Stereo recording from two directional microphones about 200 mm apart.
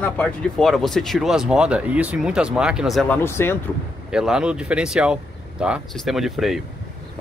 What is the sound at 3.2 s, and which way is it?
Speech, 10° left (ahead or behind).